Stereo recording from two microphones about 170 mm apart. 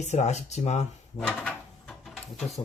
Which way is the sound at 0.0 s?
40° left (ahead or behind).